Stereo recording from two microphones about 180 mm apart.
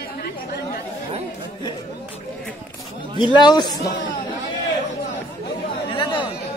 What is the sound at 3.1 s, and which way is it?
Speech, 25° left (ahead or behind).